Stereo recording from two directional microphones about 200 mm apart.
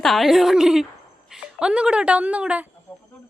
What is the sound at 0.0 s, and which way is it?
A woman's voice, centre (ahead or behind).